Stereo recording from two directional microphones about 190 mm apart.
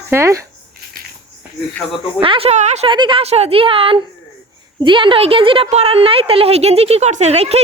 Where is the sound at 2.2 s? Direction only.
30° right (ahead or behind).